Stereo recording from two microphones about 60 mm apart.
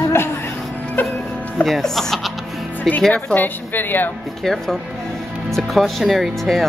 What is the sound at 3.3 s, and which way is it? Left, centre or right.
Speech, left.